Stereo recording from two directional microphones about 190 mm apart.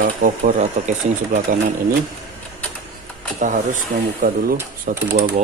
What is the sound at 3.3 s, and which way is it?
Speech, 40° right (ahead or behind).